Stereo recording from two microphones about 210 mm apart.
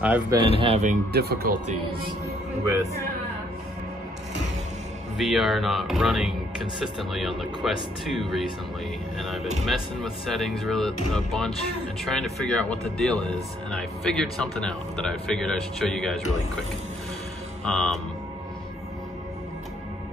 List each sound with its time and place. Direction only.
0.0 s speech: 5° right (ahead or behind)
0.6 s speech: 30° right (ahead or behind)
1.1 s speech: 45° right (ahead or behind)
2.6 s speech: 15° right (ahead or behind)
5.1 s speech: centre (ahead or behind)
17.6 s speech: 5° left (ahead or behind)